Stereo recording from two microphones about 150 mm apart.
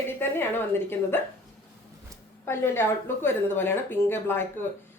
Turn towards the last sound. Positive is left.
turn(degrees=15)  # may be behind; listen again after turning